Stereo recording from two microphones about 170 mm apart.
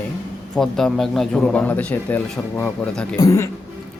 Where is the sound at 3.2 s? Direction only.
15° left (ahead or behind).